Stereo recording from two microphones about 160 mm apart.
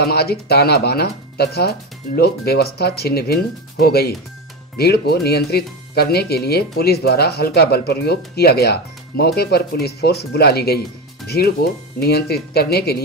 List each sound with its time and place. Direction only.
0.0 s speech: 80° left